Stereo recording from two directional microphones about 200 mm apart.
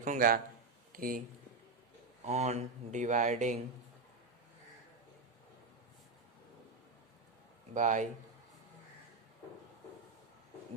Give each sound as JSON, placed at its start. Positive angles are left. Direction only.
{"t": 0.0, "sound": "speech", "side_deg": -40}
{"t": 2.2, "sound": "speech", "side_deg": -35}
{"t": 7.7, "sound": "speech", "side_deg": -40}